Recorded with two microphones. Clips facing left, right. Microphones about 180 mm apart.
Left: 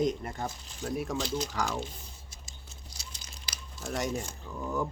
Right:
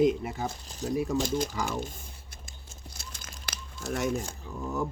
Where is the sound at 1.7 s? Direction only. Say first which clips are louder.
Right 2 dB; 50° right (ahead or behind).